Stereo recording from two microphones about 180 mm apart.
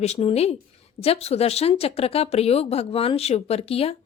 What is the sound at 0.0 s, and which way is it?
Speech, 35° left (ahead or behind).